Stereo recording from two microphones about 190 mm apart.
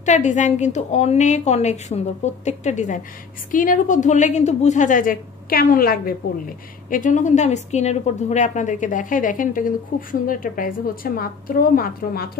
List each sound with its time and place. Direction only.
0.0 s a woman's voice: 40° left (ahead or behind)